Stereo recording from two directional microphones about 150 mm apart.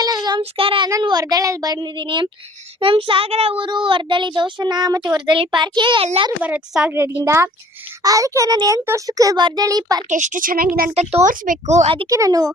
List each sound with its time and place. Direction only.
0.0 s child singing: 25° right (ahead or behind)
0.9 s a child's voice: 25° right (ahead or behind)
6.4 s a woman's voice: 10° right (ahead or behind); by 10.0 s 25° right (ahead or behind)
10.1 s a woman's voice: 55° right (ahead or behind)
11.1 s speech: 55° right (ahead or behind)
12.0 s a child's voice: 20° right (ahead or behind)